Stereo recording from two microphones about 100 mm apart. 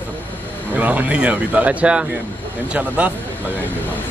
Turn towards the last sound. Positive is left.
turn(degrees=-15)  # may be behind; listen again after turning